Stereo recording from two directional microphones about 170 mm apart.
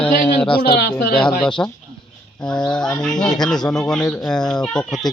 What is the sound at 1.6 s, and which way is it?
A child's voice, 15° left (ahead or behind).